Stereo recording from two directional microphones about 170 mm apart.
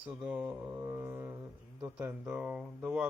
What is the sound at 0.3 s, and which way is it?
Mantra, 5° right (ahead or behind).